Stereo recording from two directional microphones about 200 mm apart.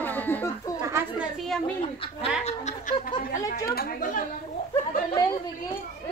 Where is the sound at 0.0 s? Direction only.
10° left (ahead or behind).